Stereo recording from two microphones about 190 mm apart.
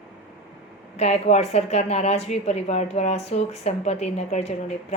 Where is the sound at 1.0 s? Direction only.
35° left (ahead or behind).